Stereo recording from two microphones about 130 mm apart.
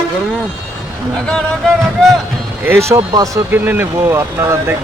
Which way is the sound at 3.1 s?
25° right (ahead or behind).